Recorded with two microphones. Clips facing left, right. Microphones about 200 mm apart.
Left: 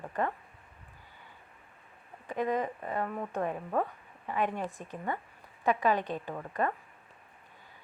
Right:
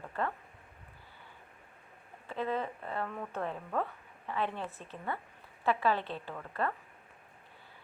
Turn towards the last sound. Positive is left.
turn(degrees=15)  # may be behind; listen again after turning